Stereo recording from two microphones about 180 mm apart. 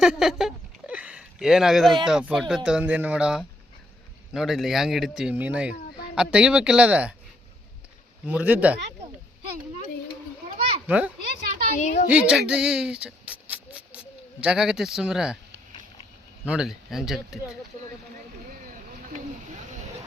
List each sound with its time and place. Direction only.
0.0 s a sound: 5° right (ahead or behind)
2.0 s speech: 5° right (ahead or behind)
8.3 s speech: 10° right (ahead or behind)
10.8 s speech: 10° right (ahead or behind)
11.8 s a woman's voice: 40° left (ahead or behind)
12.1 s speech: 5° right (ahead or behind)
16.5 s speech: 5° right (ahead or behind)
18.5 s vehicle: 50° right (ahead or behind)